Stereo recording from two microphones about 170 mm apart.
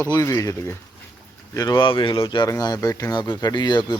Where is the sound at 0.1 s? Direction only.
20° left (ahead or behind).